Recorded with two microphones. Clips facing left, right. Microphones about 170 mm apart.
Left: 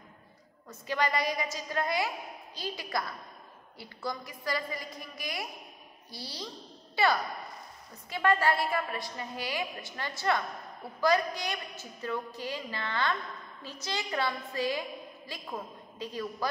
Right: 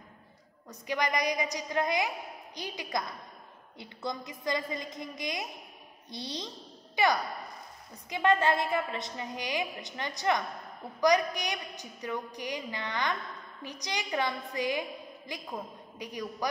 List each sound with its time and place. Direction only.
0.7 s a woman's voice: 15° right (ahead or behind)